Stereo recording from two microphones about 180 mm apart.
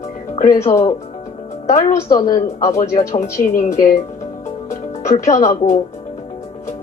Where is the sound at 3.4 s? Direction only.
45° left (ahead or behind).